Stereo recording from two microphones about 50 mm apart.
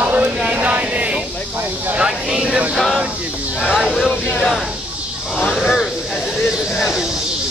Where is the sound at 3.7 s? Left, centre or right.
Centre.